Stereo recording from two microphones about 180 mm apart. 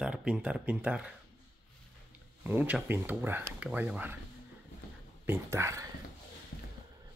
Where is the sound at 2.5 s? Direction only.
10° right (ahead or behind).